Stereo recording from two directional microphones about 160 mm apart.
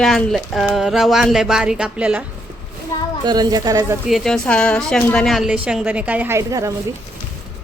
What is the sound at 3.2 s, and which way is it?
Speech, 25° right (ahead or behind).